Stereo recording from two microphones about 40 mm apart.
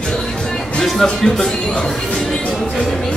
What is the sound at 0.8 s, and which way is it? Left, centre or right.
Speech, centre.